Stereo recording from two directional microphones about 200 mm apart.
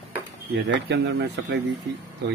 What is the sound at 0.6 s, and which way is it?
Speech, 60° right (ahead or behind).